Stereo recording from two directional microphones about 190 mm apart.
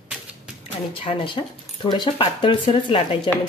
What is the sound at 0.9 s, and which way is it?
Speech, 30° left (ahead or behind).